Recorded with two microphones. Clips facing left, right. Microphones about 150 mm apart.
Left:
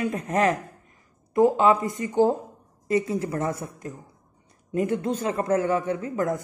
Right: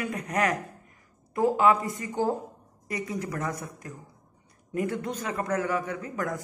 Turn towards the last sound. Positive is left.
turn(degrees=25)  # may be behind; listen again after turning